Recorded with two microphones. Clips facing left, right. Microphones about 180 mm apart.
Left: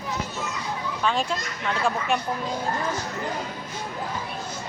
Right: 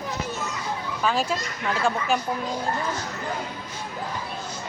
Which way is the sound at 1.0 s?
5° right (ahead or behind).